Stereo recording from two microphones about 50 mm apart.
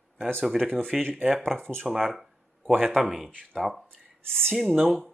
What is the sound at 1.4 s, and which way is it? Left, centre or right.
Speech, centre.